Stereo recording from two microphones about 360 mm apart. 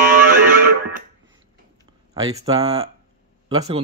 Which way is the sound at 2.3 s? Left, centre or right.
Centre.